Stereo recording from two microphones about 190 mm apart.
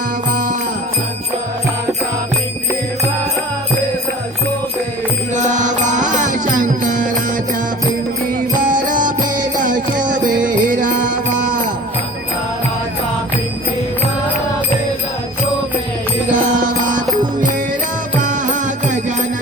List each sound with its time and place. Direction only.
5.3 s music: 40° right (ahead or behind)
8.4 s music: 45° right (ahead or behind)
16.3 s mantra: 45° right (ahead or behind)
18.2 s music: 40° right (ahead or behind)